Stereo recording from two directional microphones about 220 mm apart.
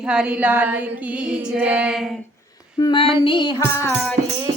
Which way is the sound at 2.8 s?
20° left (ahead or behind).